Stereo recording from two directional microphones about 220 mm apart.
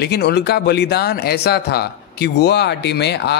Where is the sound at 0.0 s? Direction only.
50° left (ahead or behind).